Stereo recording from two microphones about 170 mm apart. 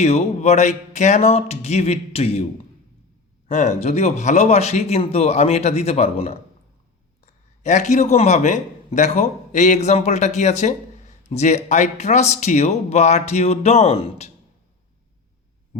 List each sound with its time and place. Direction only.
0.0 s speech: 40° left (ahead or behind)
3.5 s speech: 45° left (ahead or behind)
7.6 s a man's voice: 45° left (ahead or behind)